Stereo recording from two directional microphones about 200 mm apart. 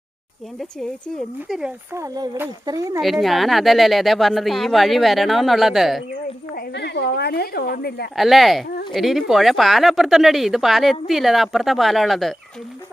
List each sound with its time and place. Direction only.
0.6 s speech: centre (ahead or behind)
1.9 s speech: 15° right (ahead or behind)
3.0 s speech: centre (ahead or behind)
6.5 s a woman's voice: 50° left (ahead or behind)
8.1 s speech: centre (ahead or behind)